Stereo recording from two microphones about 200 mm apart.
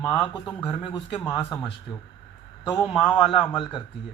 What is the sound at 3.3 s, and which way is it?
Speech, 25° left (ahead or behind).